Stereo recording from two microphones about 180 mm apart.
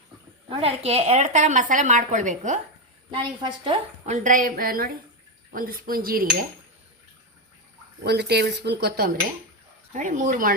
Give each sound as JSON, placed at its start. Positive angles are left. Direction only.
{"t": 0.5, "sound": "a woman's voice", "side_deg": -35}
{"t": 3.1, "sound": "a woman's voice", "side_deg": -25}
{"t": 4.0, "sound": "a woman's voice", "side_deg": -45}
{"t": 8.0, "sound": "speech", "side_deg": -65}
{"t": 9.9, "sound": "a woman's voice", "side_deg": -45}